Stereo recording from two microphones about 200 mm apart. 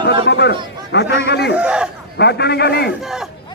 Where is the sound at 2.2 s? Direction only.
55° left (ahead or behind).